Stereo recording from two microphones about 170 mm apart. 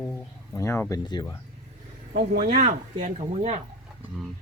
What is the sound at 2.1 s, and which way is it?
Speech, 55° right (ahead or behind).